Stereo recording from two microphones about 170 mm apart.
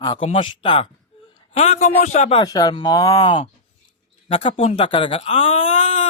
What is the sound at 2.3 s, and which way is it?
Speech, 25° left (ahead or behind).